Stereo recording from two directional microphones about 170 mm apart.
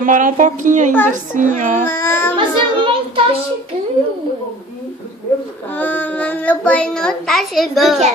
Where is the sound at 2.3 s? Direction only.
30° right (ahead or behind).